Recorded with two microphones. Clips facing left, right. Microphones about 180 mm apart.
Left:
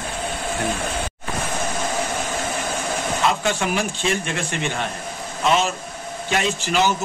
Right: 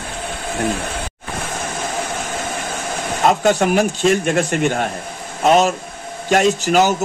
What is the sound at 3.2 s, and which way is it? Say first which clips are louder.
Speech: right 9 dB; 45° right (ahead or behind).